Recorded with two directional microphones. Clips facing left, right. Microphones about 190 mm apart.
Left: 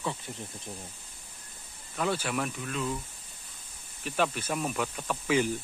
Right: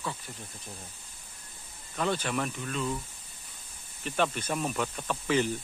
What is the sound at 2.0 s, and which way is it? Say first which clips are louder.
Speech: even; 5° left (ahead or behind).